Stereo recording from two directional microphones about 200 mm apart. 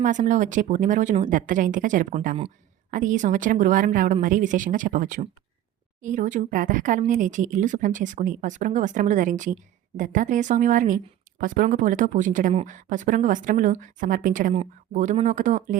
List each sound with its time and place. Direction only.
0.0 s speech: 40° right (ahead or behind)